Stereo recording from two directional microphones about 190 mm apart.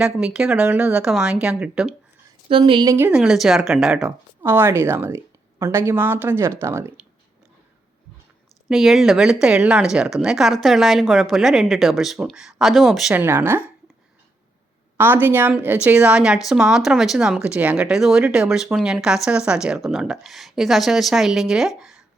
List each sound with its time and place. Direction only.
0.0 s speech: 5° right (ahead or behind)
2.5 s speech: 25° right (ahead or behind)
3.1 s speech: 5° right (ahead or behind)
8.7 s speech: centre (ahead or behind)
14.9 s speech: 10° right (ahead or behind)
21.8 s a sound: centre (ahead or behind)